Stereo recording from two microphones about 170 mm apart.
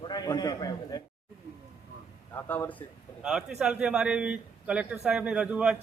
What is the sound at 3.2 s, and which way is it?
A man's voice, 5° right (ahead or behind).